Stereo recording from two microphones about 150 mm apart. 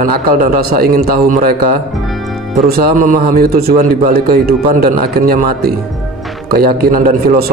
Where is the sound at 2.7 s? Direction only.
65° right (ahead or behind).